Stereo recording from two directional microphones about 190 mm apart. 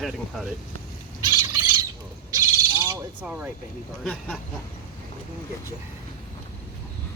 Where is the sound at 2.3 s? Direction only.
15° right (ahead or behind).